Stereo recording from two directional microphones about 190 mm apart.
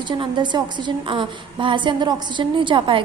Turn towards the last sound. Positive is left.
turn(degrees=-25)  # may be behind; listen again after turning